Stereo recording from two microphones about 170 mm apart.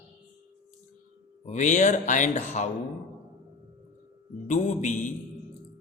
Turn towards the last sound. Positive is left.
turn(degrees=45)  # may be behind; listen again after turning